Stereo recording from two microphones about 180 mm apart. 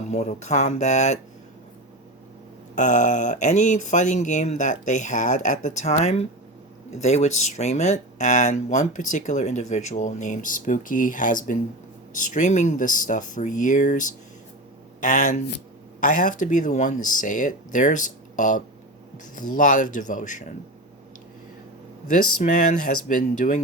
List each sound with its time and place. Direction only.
0.1 s speech: 35° left (ahead or behind)
2.7 s speech: 45° left (ahead or behind)
22.1 s speech: 45° left (ahead or behind)